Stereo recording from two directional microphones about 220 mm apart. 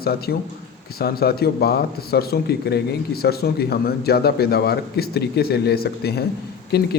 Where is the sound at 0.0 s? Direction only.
45° left (ahead or behind).